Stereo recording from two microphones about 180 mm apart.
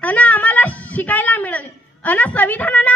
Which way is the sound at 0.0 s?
10° left (ahead or behind).